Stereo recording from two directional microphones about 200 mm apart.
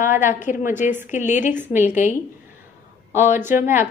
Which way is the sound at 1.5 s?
10° right (ahead or behind).